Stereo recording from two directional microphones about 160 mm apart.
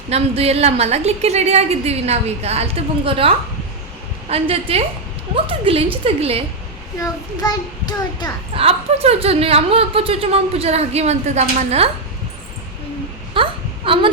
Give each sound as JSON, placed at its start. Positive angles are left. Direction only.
{"t": 0.1, "sound": "speech", "side_deg": -40}
{"t": 7.0, "sound": "a child's voice", "side_deg": 25}
{"t": 8.5, "sound": "speech", "side_deg": -40}
{"t": 13.3, "sound": "a sound", "side_deg": -35}